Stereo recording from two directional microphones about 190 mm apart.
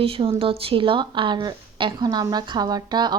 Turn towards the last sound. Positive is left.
turn(degrees=-20)  # may be behind; listen again after turning